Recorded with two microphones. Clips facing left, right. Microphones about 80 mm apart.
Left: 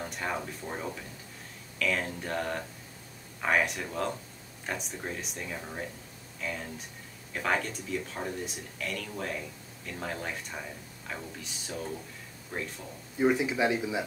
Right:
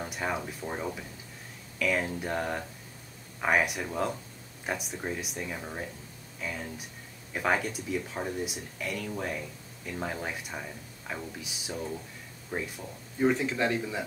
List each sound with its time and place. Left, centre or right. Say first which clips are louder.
0.0 s speech: right 1 dB; centre
13.2 s speech: left 1 dB; centre